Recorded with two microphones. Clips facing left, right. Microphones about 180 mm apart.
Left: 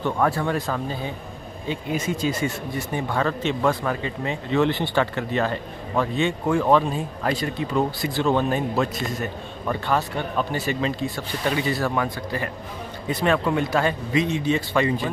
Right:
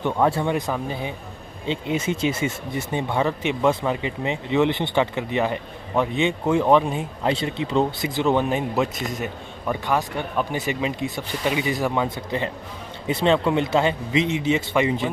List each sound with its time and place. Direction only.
0.0 s speech: 20° right (ahead or behind)